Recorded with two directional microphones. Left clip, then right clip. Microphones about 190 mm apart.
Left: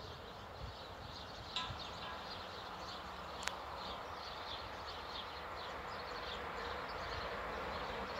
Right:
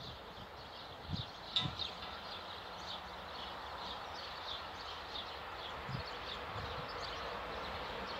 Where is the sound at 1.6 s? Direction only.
45° right (ahead or behind).